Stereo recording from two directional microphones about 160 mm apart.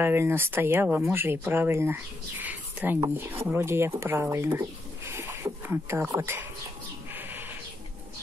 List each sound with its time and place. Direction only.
0.0 s speech: 15° right (ahead or behind)
7.2 s sheep: 10° right (ahead or behind)